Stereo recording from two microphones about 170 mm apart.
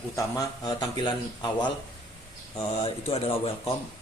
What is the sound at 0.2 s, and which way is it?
A man's voice, 20° left (ahead or behind).